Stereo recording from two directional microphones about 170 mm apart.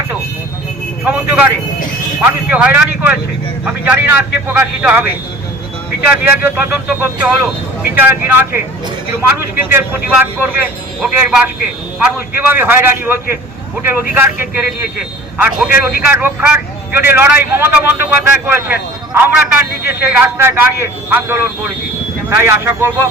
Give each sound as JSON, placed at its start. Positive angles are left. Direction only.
{"t": 1.0, "sound": "speech", "side_deg": -10}
{"t": 9.6, "sound": "speech", "side_deg": -10}
{"t": 15.7, "sound": "speech", "side_deg": 60}
{"t": 16.0, "sound": "speech", "side_deg": -10}